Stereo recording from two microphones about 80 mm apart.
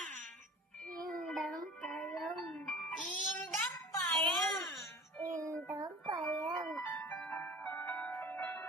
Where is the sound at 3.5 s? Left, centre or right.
Left.